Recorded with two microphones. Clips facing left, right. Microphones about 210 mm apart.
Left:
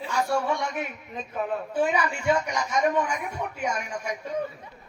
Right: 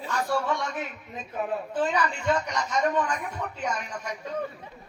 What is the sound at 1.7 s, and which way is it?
A woman's voice, 10° left (ahead or behind).